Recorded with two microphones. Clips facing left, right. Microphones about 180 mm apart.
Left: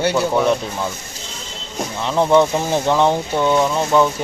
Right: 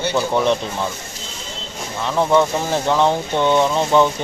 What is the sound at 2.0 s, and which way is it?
Speech, 15° left (ahead or behind).